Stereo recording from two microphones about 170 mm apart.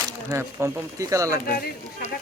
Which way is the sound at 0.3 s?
15° right (ahead or behind).